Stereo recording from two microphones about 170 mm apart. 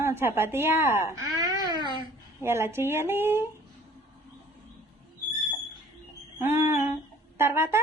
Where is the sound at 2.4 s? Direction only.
15° right (ahead or behind).